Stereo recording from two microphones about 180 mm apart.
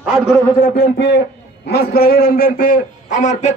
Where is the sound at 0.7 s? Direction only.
65° left (ahead or behind).